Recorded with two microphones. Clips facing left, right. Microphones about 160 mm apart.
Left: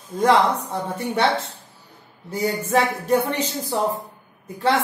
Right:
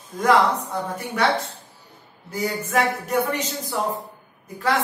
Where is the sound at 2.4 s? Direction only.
30° left (ahead or behind).